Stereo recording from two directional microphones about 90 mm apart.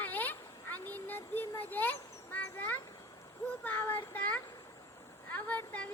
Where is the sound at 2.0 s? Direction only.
35° left (ahead or behind).